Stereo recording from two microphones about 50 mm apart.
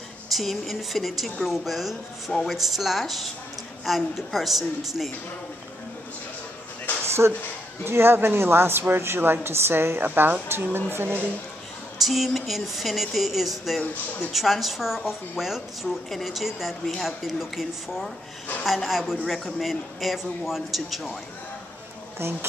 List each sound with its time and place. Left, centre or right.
0.3 s a woman's voice: centre
7.2 s speech: right
12.0 s a woman's voice: centre